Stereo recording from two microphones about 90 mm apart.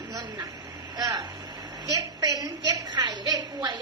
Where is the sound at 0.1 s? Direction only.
40° right (ahead or behind).